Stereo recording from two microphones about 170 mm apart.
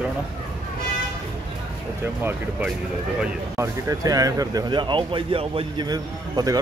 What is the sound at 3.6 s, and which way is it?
Speech, 20° right (ahead or behind).